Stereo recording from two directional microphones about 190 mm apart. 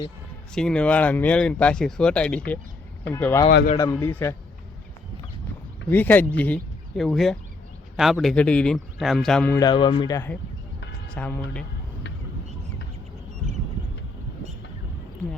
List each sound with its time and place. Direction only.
0.5 s speech: 5° left (ahead or behind)
5.9 s speech: 10° left (ahead or behind)
9.6 s speech: 25° left (ahead or behind)
11.1 s speech: 5° left (ahead or behind)